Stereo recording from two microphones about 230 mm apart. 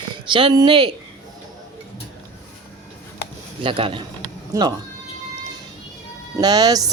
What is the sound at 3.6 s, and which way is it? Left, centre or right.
A woman's voice, right.